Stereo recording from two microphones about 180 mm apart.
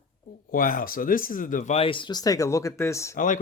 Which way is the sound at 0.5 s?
50° left (ahead or behind).